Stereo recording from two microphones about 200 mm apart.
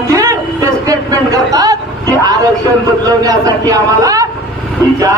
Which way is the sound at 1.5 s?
20° right (ahead or behind).